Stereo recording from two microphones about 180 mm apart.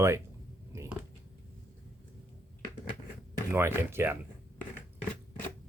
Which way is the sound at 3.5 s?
15° right (ahead or behind).